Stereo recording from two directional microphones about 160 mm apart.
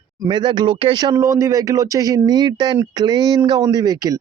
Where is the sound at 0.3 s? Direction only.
30° right (ahead or behind).